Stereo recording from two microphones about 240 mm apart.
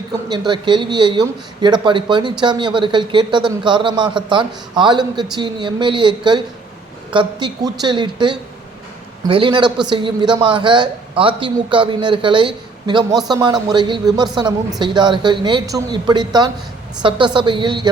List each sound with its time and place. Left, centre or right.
0.3 s a man's voice: centre